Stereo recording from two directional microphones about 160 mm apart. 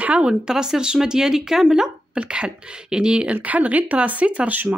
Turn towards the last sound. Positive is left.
turn(degrees=-10)  # may be behind; listen again after turning